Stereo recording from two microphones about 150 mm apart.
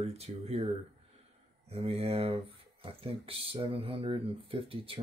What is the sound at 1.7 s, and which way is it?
Speech, 40° right (ahead or behind).